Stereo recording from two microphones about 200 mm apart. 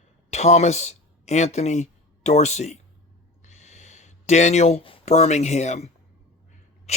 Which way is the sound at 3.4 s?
35° left (ahead or behind).